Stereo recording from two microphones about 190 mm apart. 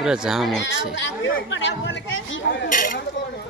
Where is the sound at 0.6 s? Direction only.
70° left (ahead or behind).